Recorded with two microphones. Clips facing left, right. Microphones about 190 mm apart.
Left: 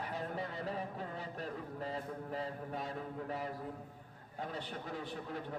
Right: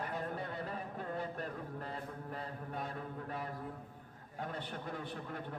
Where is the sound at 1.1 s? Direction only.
55° right (ahead or behind).